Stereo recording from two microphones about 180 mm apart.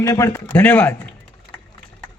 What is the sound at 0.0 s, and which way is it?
A man's voice, 15° left (ahead or behind).